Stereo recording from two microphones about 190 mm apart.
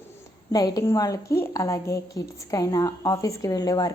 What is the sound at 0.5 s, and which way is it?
A woman's voice, 20° left (ahead or behind).